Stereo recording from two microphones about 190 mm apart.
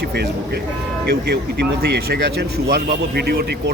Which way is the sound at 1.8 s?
55° right (ahead or behind).